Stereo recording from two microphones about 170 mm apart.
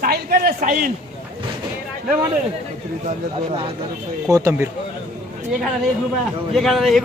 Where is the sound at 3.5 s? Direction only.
30° right (ahead or behind).